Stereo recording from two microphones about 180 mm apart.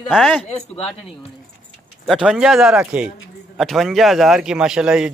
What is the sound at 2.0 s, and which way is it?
Speech, centre (ahead or behind).